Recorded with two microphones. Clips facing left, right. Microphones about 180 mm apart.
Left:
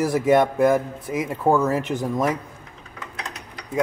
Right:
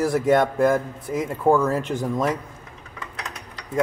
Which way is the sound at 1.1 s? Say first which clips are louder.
Right 1 dB; 10° left (ahead or behind).